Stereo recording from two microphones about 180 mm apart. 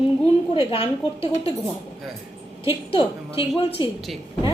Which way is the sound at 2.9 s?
30° left (ahead or behind).